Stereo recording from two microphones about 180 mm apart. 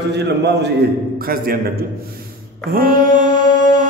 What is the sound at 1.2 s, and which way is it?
Speech, 55° right (ahead or behind).